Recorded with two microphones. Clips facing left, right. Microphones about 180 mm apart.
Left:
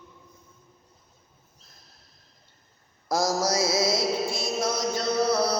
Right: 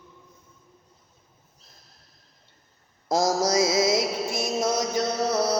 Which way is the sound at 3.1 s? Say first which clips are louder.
Right 2 dB; 25° right (ahead or behind).